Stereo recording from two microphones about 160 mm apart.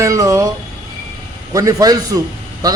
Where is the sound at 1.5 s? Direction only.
20° right (ahead or behind).